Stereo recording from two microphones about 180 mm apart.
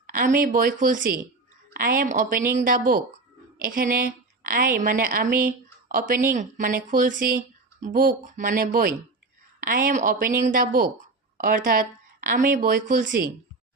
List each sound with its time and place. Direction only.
0.1 s speech: 50° right (ahead or behind)